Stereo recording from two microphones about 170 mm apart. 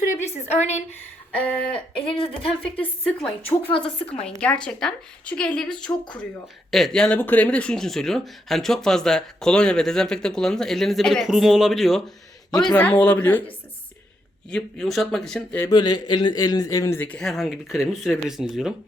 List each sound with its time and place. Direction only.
0.0 s a sound: 45° left (ahead or behind)
2.0 s a woman's voice: 35° left (ahead or behind)
2.7 s a man's voice: 5° left (ahead or behind)
3.7 s a woman's voice: 30° left (ahead or behind)
4.3 s a man's voice: 5° left (ahead or behind)
14.5 s speech: centre (ahead or behind)
15.7 s a man's voice: 25° left (ahead or behind); by 18.7 s centre (ahead or behind)